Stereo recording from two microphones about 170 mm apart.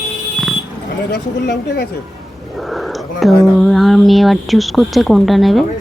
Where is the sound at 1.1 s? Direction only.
75° left (ahead or behind).